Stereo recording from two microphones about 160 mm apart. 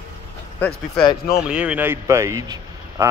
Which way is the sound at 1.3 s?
5° right (ahead or behind).